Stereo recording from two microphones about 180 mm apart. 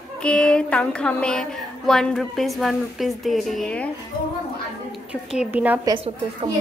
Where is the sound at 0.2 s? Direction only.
5° left (ahead or behind).